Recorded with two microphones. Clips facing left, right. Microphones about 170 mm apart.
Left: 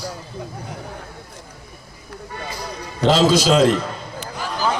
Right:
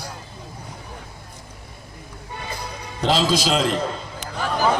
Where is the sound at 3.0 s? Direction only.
45° left (ahead or behind).